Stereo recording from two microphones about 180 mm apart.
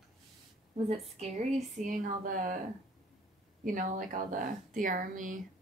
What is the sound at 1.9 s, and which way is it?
Speech, 50° right (ahead or behind).